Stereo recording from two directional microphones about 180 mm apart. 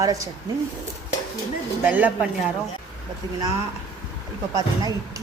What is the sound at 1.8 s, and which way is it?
Cutlery, 10° right (ahead or behind).